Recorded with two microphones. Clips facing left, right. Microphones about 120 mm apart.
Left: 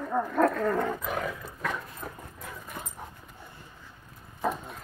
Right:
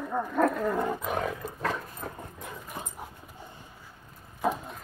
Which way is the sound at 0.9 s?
25° right (ahead or behind).